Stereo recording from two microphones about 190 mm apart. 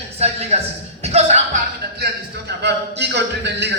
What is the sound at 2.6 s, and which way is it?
A man's voice, 65° right (ahead or behind).